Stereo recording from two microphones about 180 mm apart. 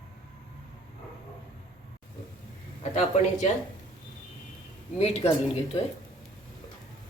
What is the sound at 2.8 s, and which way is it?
Speech, 40° left (ahead or behind).